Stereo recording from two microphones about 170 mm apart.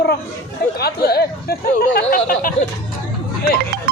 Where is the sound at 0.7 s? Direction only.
65° left (ahead or behind).